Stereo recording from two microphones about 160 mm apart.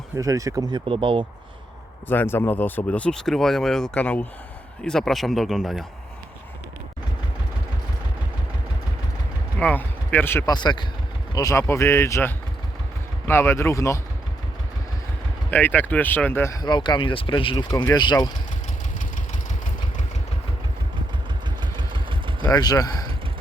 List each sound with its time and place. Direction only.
0.2 s speech: 20° right (ahead or behind)
2.0 s speech: 15° left (ahead or behind)
9.6 s speech: 10° left (ahead or behind)
15.4 s speech: 10° left (ahead or behind); by 18.3 s 25° left (ahead or behind)
21.6 s vehicle: 30° right (ahead or behind)
22.4 s speech: 25° left (ahead or behind)